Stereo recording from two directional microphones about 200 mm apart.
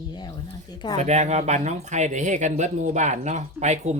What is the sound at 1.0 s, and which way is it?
Speech, 35° right (ahead or behind).